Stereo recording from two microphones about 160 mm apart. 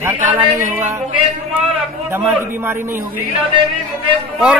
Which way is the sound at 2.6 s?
15° right (ahead or behind).